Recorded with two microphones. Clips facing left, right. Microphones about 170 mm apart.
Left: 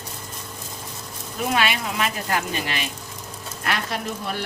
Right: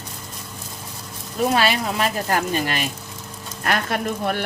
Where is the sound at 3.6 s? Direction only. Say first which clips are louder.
Right 4 dB; 55° right (ahead or behind).